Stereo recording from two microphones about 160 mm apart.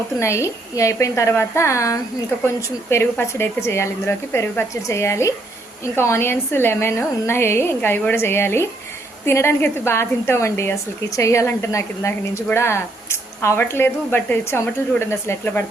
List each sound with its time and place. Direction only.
0.2 s a woman's voice: 15° left (ahead or behind)